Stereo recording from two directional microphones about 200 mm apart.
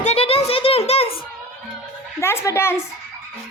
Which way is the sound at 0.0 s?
30° left (ahead or behind).